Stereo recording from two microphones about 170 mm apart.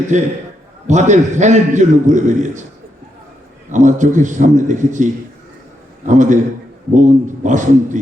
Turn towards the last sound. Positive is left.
turn(degrees=-45)  # may be behind; listen again after turning